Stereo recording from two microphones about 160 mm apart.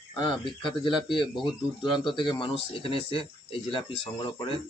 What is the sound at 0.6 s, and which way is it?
Speech, 30° left (ahead or behind).